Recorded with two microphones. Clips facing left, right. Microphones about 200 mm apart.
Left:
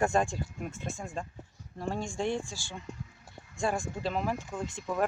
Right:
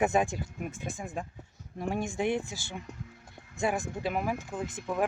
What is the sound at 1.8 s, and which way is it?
Speech, 20° right (ahead or behind).